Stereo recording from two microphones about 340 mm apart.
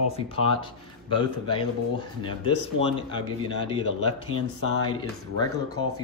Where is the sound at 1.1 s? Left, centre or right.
Centre.